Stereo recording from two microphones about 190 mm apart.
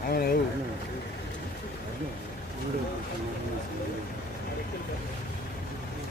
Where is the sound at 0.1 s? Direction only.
50° left (ahead or behind).